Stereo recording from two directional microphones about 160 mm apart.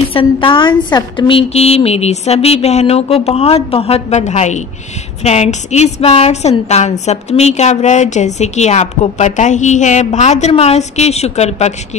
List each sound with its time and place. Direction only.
0.1 s a woman's voice: 35° left (ahead or behind)